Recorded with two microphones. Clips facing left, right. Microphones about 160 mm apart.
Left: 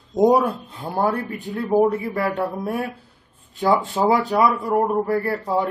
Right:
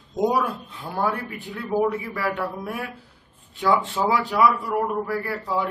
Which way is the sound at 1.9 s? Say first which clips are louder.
Left 4 dB; 40° left (ahead or behind).